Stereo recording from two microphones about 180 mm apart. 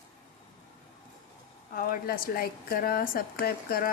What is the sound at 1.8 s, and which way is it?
A woman's voice, 55° left (ahead or behind).